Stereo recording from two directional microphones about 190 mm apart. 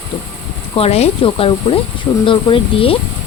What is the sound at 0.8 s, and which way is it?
A woman's voice, 35° left (ahead or behind).